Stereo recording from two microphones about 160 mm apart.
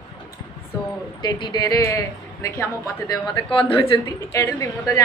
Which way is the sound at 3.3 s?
30° left (ahead or behind).